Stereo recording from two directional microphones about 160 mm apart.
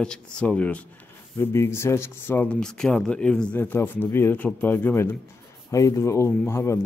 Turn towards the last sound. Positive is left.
turn(degrees=15)  # may be behind; listen again after turning